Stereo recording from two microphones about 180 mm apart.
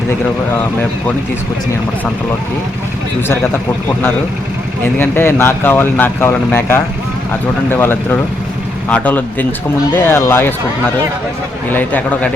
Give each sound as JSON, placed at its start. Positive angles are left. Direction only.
{"t": 4.9, "sound": "speech", "side_deg": 10}
{"t": 11.7, "sound": "speech", "side_deg": 10}